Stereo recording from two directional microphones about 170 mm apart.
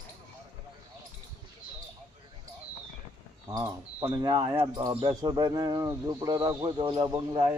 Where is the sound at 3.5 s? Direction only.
20° right (ahead or behind).